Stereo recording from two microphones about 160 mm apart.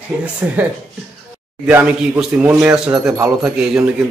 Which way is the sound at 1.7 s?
10° right (ahead or behind).